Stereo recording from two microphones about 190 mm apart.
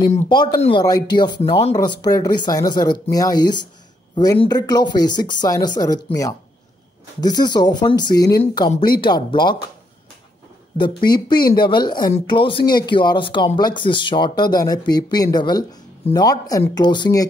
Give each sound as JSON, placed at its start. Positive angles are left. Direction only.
{"t": 0.3, "sound": "speech", "side_deg": 25}
{"t": 10.8, "sound": "speech", "side_deg": 25}